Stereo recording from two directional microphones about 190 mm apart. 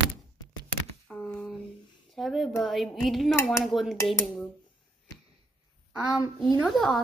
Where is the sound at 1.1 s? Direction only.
5° left (ahead or behind).